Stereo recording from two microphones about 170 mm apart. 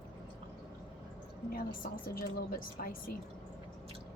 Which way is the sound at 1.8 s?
60° left (ahead or behind).